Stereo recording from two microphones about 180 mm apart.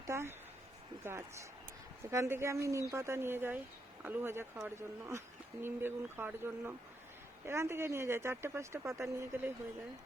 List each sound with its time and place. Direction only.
0.1 s speech: 15° right (ahead or behind)